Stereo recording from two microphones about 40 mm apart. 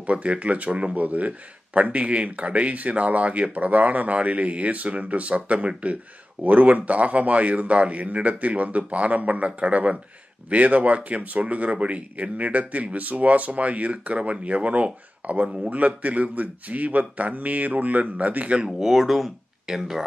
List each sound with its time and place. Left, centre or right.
0.0 s speech: right
15.4 s speech: right
15.7 s speech: right
18.7 s speech: centre